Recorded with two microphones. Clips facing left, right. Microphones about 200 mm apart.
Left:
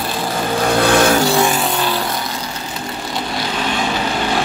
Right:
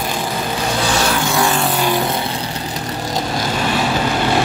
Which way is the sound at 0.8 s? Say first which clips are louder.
Left 6 dB; 55° left (ahead or behind).